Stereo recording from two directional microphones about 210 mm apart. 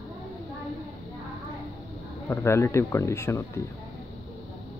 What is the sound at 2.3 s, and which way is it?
Speech, 10° left (ahead or behind).